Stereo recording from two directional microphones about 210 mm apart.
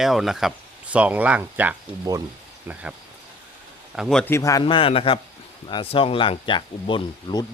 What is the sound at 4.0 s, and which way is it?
A man's voice, centre (ahead or behind).